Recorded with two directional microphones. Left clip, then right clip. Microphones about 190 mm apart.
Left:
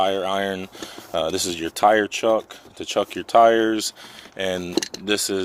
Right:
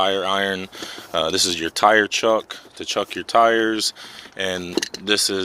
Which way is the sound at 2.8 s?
20° left (ahead or behind).